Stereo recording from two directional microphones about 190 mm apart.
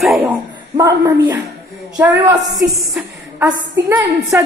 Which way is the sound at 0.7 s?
20° right (ahead or behind).